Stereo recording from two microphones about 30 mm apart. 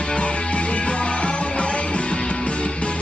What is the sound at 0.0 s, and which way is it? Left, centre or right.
Music, left.